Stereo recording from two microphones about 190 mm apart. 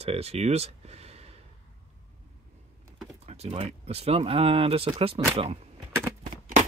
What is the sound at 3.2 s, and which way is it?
Speech, 35° right (ahead or behind).